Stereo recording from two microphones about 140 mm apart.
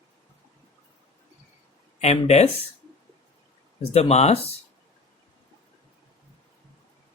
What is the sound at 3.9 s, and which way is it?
Speech, 50° left (ahead or behind).